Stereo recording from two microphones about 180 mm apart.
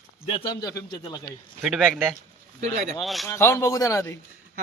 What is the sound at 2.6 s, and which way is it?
Speech, 40° right (ahead or behind).